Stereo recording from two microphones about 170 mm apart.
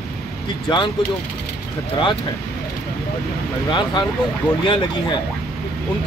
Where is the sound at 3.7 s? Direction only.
25° left (ahead or behind).